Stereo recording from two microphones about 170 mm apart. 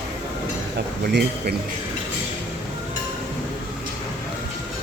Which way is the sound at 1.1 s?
75° right (ahead or behind).